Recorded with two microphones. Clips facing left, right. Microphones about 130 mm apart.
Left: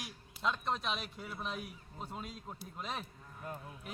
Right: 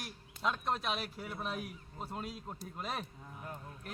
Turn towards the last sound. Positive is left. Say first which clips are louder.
# left 1 dB
turn(degrees=0)  # may be behind; listen again after turning